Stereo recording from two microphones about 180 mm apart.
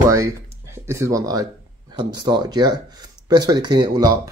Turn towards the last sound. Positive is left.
turn(degrees=-20)  # may be behind; listen again after turning